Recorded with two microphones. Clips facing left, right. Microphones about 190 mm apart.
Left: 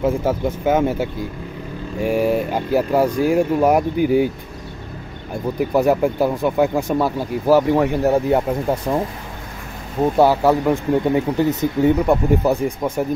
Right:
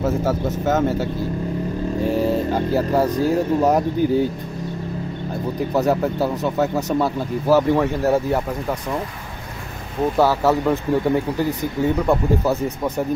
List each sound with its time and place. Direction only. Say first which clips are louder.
0.0 s speech: left 2 dB; 10° left (ahead or behind)
5.8 s speech: left 3 dB; 10° left (ahead or behind)
10.1 s speech: left 3 dB; 15° left (ahead or behind)